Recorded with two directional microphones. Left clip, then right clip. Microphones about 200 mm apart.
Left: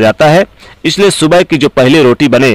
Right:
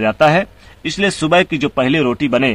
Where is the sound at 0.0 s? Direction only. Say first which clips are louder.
Left 6 dB; 45° left (ahead or behind).